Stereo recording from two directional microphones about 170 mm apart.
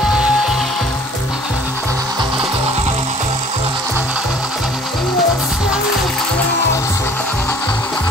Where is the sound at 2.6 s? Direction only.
40° right (ahead or behind).